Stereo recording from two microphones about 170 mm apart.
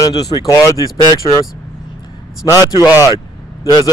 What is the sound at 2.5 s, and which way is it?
Speech, 20° left (ahead or behind).